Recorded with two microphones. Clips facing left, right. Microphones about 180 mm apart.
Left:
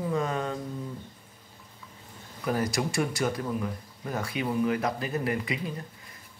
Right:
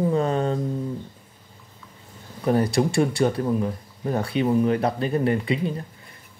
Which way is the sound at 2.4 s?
30° right (ahead or behind).